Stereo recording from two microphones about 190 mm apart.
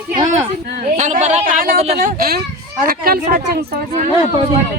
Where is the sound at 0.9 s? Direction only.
40° right (ahead or behind).